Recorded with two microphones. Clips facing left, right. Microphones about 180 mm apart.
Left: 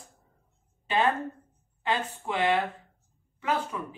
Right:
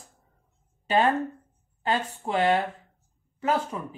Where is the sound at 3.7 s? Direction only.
35° right (ahead or behind).